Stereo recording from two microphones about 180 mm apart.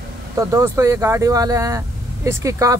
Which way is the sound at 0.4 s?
15° right (ahead or behind).